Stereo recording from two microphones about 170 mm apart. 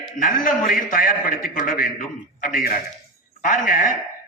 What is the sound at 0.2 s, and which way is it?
A man's voice, 50° left (ahead or behind).